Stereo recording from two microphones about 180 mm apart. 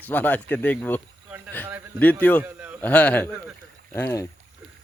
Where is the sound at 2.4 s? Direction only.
10° right (ahead or behind).